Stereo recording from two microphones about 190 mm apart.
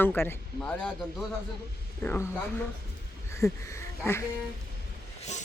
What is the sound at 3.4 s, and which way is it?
Speech, 15° left (ahead or behind).